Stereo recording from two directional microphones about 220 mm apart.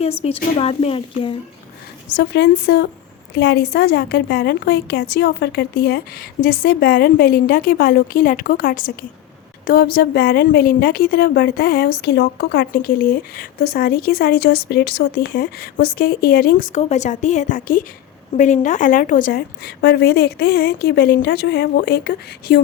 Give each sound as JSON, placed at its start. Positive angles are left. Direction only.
{"t": 0.0, "sound": "a woman's voice", "side_deg": 25}
{"t": 2.1, "sound": "a woman's voice", "side_deg": 50}